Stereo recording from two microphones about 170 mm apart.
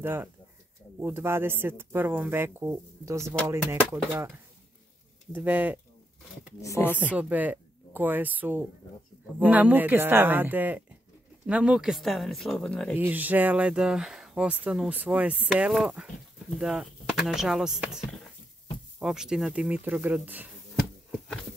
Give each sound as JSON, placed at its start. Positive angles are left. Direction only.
{"t": 0.0, "sound": "speech", "side_deg": -15}
{"t": 5.3, "sound": "speech", "side_deg": -10}
{"t": 6.6, "sound": "speech", "side_deg": 15}
{"t": 7.2, "sound": "speech", "side_deg": -10}
{"t": 12.9, "sound": "speech", "side_deg": -10}